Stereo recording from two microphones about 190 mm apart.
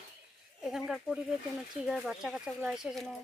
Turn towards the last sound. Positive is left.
turn(degrees=0)  # may be behind; listen again after turning